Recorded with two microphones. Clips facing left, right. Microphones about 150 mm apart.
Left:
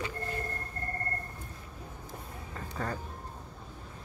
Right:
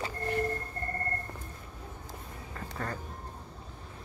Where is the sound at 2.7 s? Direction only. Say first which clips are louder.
Left 2 dB; 10° left (ahead or behind).